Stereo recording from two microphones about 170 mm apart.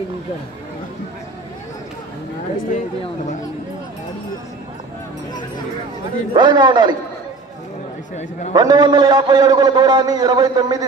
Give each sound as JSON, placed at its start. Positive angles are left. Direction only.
{"t": 6.3, "sound": "a man's voice", "side_deg": -25}
{"t": 8.5, "sound": "a man's voice", "side_deg": -25}